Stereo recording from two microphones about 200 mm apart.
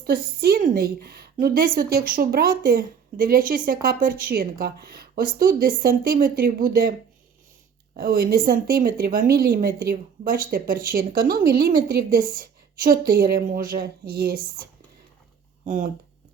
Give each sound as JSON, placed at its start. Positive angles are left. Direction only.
{"t": 0.0, "sound": "a woman's voice", "side_deg": -50}
{"t": 7.9, "sound": "a woman's voice", "side_deg": -45}
{"t": 15.6, "sound": "speech", "side_deg": -40}